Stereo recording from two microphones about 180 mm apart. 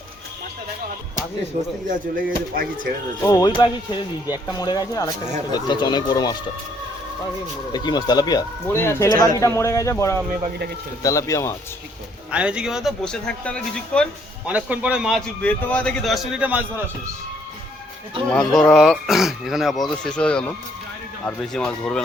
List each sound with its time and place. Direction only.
2.1 s speech: 55° right (ahead or behind)
3.2 s speech: 20° left (ahead or behind)
7.7 s speech: 25° left (ahead or behind)
12.3 s speech: 5° right (ahead or behind)
14.4 s a man's voice: 10° right (ahead or behind)
15.4 s speech: 10° left (ahead or behind); by 16.8 s 10° right (ahead or behind)
18.3 s speech: 5° left (ahead or behind)